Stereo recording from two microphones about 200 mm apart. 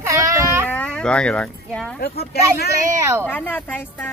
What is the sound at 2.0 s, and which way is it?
Speech, 50° left (ahead or behind).